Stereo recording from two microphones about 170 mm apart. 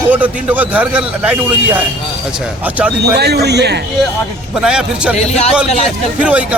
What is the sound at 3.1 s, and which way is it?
Speech, 75° right (ahead or behind).